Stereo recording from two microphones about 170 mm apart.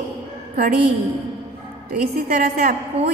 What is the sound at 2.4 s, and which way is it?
Speech, 60° right (ahead or behind).